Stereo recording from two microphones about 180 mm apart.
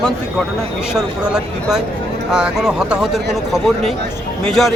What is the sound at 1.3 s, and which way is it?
Speech, centre (ahead or behind).